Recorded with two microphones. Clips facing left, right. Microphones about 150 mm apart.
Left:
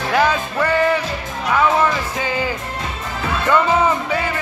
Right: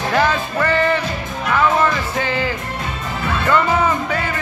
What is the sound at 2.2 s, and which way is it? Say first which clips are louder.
Music: right 1 dB; 10° left (ahead or behind).